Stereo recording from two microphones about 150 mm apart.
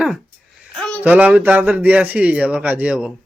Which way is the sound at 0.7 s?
5° left (ahead or behind).